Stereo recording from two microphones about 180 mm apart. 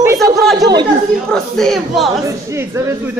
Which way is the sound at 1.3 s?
Centre (ahead or behind).